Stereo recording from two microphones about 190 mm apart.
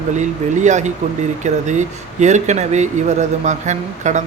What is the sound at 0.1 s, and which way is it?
A man's voice, 40° right (ahead or behind).